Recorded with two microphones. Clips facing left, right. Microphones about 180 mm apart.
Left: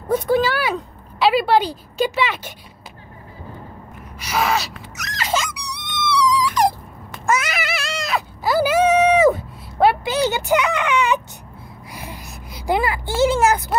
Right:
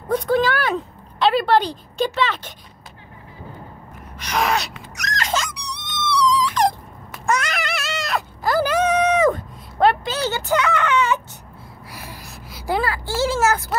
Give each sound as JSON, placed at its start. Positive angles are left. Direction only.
{"t": 0.1, "sound": "speech", "side_deg": 5}
{"t": 4.2, "sound": "dog", "side_deg": 5}
{"t": 7.1, "sound": "a sound", "side_deg": 5}
{"t": 11.9, "sound": "gasp", "side_deg": 20}
{"t": 12.5, "sound": "speech", "side_deg": 15}